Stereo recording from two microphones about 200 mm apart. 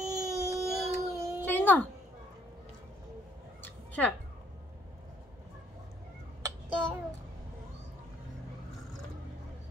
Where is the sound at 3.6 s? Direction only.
5° left (ahead or behind).